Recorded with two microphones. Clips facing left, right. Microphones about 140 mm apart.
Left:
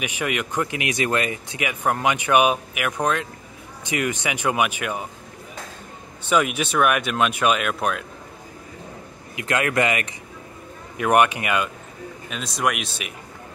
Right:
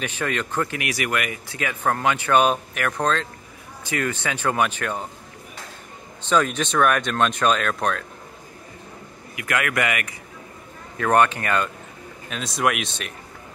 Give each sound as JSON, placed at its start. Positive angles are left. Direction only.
{"t": 0.0, "sound": "speech", "side_deg": 15}
{"t": 6.2, "sound": "speech", "side_deg": 10}
{"t": 9.3, "sound": "speech", "side_deg": 25}
{"t": 12.3, "sound": "speech", "side_deg": 0}